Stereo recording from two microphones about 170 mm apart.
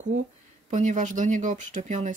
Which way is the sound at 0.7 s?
45° right (ahead or behind).